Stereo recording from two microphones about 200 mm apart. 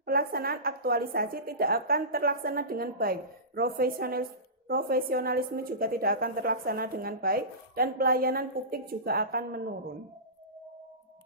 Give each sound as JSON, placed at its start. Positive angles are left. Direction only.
{"t": 0.0, "sound": "a woman's voice", "side_deg": -50}